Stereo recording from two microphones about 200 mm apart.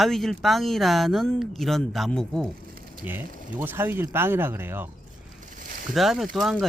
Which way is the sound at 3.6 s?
10° right (ahead or behind).